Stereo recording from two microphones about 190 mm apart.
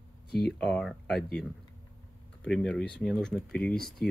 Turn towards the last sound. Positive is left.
turn(degrees=0)  # may be behind; listen again after turning